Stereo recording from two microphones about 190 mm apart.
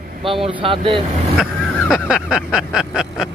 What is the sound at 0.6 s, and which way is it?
Speech, 30° right (ahead or behind).